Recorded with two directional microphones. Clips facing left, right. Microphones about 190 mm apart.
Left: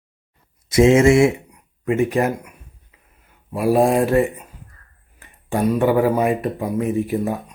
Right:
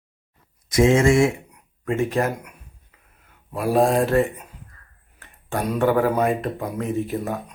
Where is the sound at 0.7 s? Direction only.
25° left (ahead or behind).